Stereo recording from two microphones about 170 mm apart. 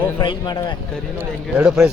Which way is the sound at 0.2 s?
25° left (ahead or behind).